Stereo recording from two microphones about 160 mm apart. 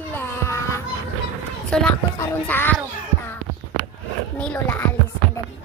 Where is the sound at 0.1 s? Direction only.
15° left (ahead or behind).